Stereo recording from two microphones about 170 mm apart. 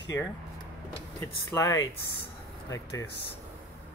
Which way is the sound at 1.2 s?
15° left (ahead or behind).